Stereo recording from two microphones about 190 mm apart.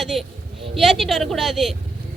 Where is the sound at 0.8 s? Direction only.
Centre (ahead or behind).